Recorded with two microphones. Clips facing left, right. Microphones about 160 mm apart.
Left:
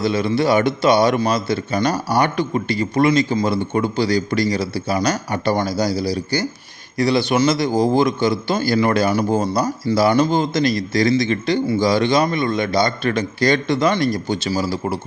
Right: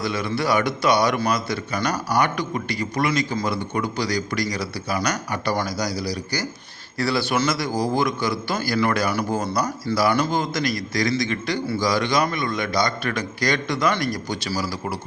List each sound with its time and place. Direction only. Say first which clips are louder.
0.0 s a man's voice: left 6 dB; 25° left (ahead or behind)